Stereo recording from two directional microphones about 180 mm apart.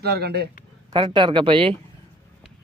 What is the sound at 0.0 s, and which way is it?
Speech, 65° right (ahead or behind).